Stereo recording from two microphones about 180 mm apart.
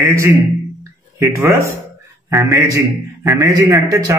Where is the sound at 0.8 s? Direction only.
15° right (ahead or behind).